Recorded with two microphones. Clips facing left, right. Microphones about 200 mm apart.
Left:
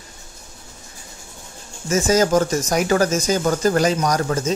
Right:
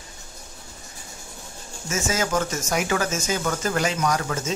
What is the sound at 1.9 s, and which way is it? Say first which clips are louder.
Speech: left 8 dB; 35° left (ahead or behind).